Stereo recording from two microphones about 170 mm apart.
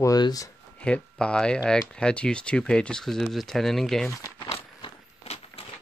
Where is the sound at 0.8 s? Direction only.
5° left (ahead or behind).